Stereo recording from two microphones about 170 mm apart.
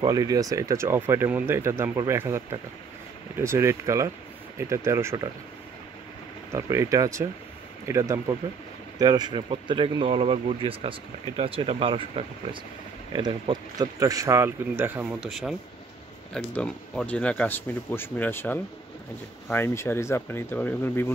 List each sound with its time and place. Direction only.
0.0 s speech: 20° right (ahead or behind)
6.5 s speech: 15° right (ahead or behind); by 21.1 s 10° left (ahead or behind)